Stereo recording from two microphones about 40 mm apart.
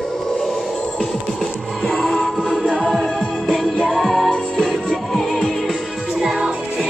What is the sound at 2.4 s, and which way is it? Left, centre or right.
Music, right.